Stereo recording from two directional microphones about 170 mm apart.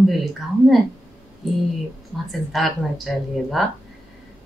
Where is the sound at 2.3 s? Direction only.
Centre (ahead or behind).